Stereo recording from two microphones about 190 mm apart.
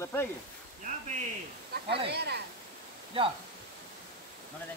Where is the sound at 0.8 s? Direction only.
40° right (ahead or behind).